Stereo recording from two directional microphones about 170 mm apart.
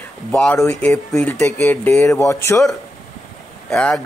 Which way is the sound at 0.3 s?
5° left (ahead or behind).